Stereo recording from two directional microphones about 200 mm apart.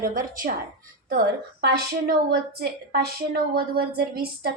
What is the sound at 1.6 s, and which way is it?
A woman's voice, 55° right (ahead or behind).